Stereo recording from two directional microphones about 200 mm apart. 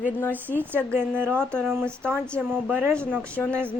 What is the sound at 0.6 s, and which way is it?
Speech, 10° right (ahead or behind).